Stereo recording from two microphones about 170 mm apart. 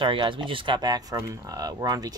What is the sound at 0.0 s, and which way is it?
Speech, 30° right (ahead or behind).